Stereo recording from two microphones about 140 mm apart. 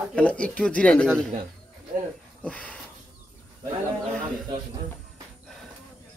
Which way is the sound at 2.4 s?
10° left (ahead or behind).